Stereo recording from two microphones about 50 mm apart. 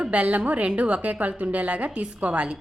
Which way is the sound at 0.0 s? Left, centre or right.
Right.